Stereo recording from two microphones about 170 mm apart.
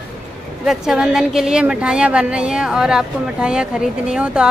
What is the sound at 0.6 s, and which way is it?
A woman's voice, 5° right (ahead or behind).